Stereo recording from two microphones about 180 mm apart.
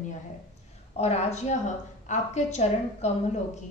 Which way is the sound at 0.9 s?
35° left (ahead or behind).